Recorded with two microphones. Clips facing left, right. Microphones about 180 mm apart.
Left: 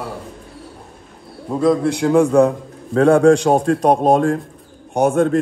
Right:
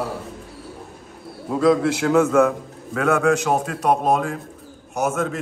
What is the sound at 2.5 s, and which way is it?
A man's voice, 30° left (ahead or behind).